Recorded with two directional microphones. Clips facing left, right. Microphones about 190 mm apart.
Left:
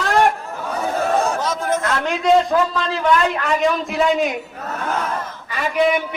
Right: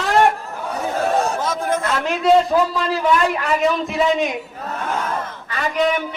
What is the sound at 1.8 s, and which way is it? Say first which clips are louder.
A man's voice: even; 5° right (ahead or behind).